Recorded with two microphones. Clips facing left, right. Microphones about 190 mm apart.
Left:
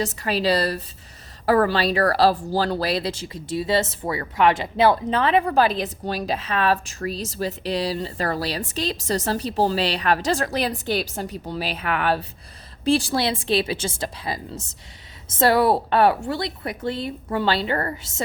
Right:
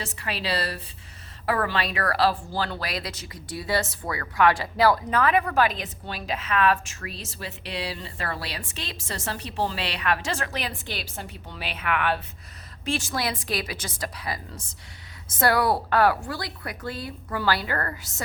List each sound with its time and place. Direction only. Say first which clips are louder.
0.0 s a woman's voice: left 9 dB; 40° left (ahead or behind); by 18.1 s 25° left (ahead or behind)